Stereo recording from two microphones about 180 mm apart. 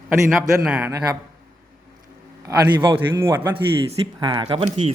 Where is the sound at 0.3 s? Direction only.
5° right (ahead or behind).